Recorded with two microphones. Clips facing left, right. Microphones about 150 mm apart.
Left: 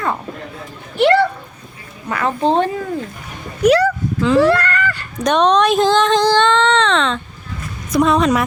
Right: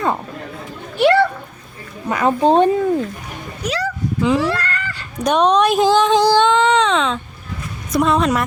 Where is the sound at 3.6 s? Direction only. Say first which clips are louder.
Left 10 dB; 60° left (ahead or behind).